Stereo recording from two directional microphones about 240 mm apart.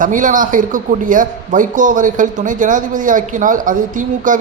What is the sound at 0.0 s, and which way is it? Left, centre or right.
A man's voice, right.